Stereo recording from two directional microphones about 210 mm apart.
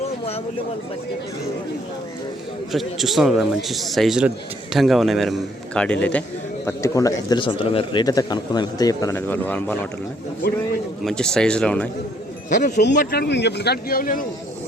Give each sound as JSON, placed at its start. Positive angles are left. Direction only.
{"t": 2.7, "sound": "a man's voice", "side_deg": 0}
{"t": 11.0, "sound": "a man's voice", "side_deg": 5}
{"t": 12.6, "sound": "a man's voice", "side_deg": 40}